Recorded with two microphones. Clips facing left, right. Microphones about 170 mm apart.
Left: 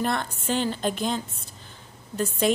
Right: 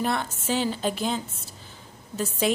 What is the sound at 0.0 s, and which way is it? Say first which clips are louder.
A woman's voice: even; 5° right (ahead or behind).